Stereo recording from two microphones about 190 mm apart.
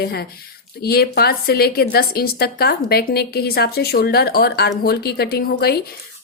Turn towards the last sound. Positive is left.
turn(degrees=55)  # may be behind; listen again after turning